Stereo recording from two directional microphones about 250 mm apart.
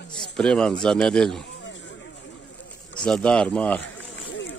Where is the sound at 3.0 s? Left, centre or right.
Centre.